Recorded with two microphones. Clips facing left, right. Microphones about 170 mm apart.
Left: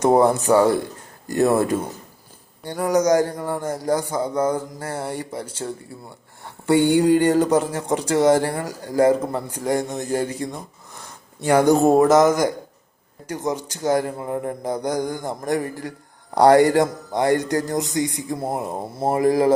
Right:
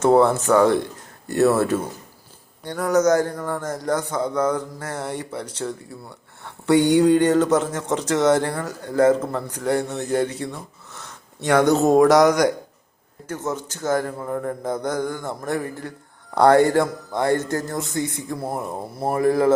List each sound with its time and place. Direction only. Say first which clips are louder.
0.0 s a man's voice: even; 15° left (ahead or behind)
3.6 s a man's voice: left 2 dB; 30° left (ahead or behind)
4.1 s a man's voice: even; 10° left (ahead or behind)
6.7 s a man's voice: even; 10° left (ahead or behind)
13.2 s a man's voice: left 2 dB; 15° left (ahead or behind)